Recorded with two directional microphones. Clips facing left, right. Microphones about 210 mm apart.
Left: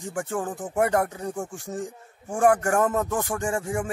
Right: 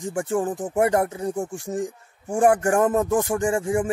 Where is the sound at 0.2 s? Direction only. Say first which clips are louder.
Right 5 dB; 15° right (ahead or behind).